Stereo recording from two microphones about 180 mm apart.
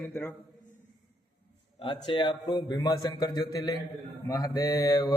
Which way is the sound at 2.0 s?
25° left (ahead or behind).